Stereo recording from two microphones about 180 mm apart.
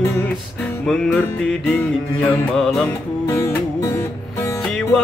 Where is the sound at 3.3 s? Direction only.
15° left (ahead or behind).